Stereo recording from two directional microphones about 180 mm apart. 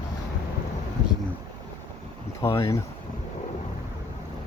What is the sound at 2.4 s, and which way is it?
Speech, 15° left (ahead or behind).